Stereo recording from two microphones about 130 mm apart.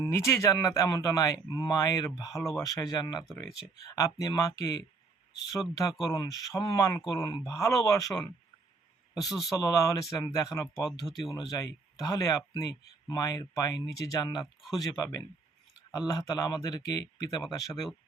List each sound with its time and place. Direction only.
0.0 s speech: 20° left (ahead or behind)
9.5 s speech: 25° left (ahead or behind)
10.8 s speech: centre (ahead or behind)
11.3 s speech: 30° left (ahead or behind)